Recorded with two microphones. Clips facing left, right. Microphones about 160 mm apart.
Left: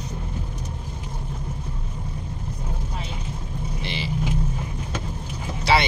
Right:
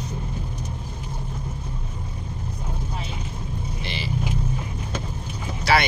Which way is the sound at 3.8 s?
20° left (ahead or behind).